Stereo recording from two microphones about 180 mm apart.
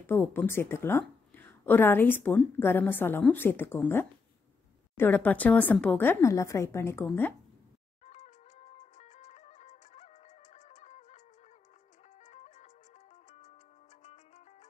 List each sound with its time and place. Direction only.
0.0 s speech: 10° left (ahead or behind)
8.0 s music: 35° left (ahead or behind)
12.2 s music: 40° left (ahead or behind)
14.0 s music: 40° left (ahead or behind)